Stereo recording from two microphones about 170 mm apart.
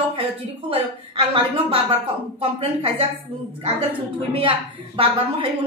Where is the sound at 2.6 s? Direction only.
35° right (ahead or behind).